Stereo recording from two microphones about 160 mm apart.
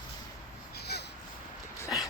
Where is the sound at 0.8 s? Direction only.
90° left.